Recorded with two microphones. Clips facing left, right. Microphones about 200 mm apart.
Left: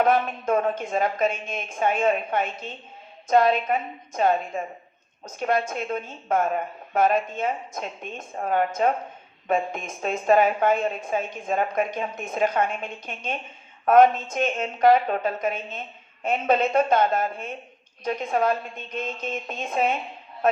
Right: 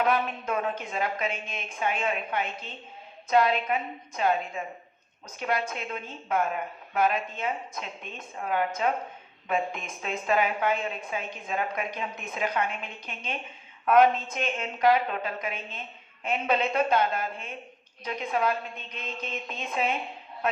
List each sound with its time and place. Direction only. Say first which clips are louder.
0.0 s a woman's voice: left 5 dB; 45° left (ahead or behind)